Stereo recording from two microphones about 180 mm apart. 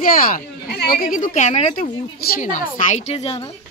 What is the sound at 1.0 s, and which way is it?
A woman's voice, 45° left (ahead or behind).